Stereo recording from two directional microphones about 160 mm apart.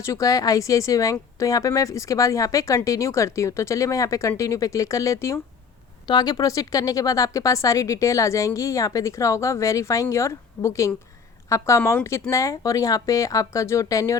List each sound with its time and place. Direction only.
0.0 s a woman's voice: 20° left (ahead or behind)